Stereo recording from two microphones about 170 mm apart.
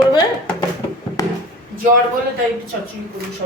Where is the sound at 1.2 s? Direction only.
20° left (ahead or behind).